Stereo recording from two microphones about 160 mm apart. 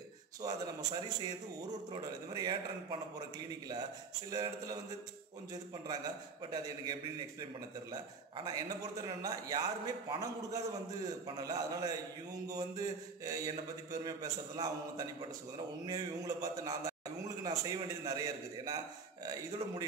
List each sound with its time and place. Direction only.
0.4 s a man's voice: 25° right (ahead or behind)
8.5 s a man's voice: 25° right (ahead or behind)